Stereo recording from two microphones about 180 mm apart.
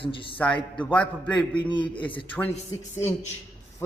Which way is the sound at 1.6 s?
25° left (ahead or behind).